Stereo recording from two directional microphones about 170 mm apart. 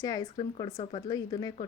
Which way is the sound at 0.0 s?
20° left (ahead or behind).